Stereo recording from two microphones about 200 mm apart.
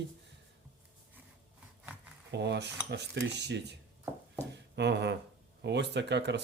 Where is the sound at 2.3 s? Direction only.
60° right (ahead or behind).